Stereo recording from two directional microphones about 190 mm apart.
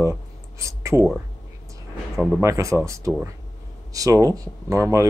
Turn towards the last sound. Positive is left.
turn(degrees=-15)  # may be behind; listen again after turning